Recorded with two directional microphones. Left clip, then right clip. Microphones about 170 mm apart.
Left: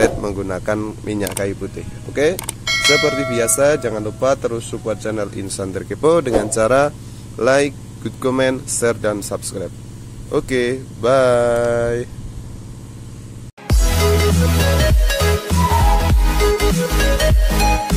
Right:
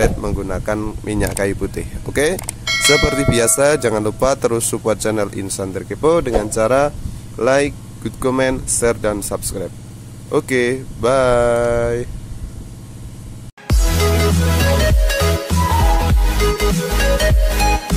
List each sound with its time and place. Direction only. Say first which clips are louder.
0.0 s speech: left 2 dB; centre (ahead or behind); by 2.3 s 25° right (ahead or behind)
2.3 s music: even; centre (ahead or behind)
3.3 s speech: right 2 dB; 25° right (ahead or behind); by 12.1 s 5° right (ahead or behind)
13.7 s music: left 1 dB; centre (ahead or behind)